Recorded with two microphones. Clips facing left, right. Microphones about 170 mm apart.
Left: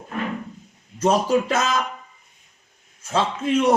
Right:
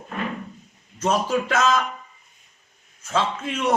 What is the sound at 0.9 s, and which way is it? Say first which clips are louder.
Speech: left 3 dB; 35° left (ahead or behind).